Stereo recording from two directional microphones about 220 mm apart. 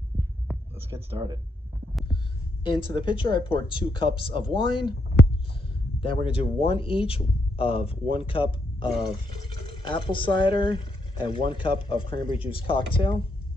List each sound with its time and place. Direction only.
0.7 s speech: 10° right (ahead or behind)
2.6 s a man's voice: 20° left (ahead or behind)
5.9 s a man's voice: 25° left (ahead or behind)